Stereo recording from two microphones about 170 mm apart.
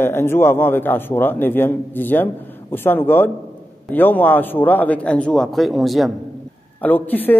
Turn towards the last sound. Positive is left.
turn(degrees=10)  # may be behind; listen again after turning